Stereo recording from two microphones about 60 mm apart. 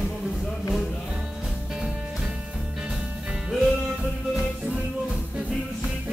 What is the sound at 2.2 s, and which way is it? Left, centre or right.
Music, centre.